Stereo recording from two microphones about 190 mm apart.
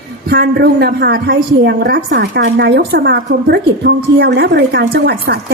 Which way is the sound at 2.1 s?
70° right (ahead or behind).